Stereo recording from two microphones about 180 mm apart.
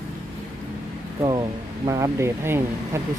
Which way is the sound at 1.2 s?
20° right (ahead or behind).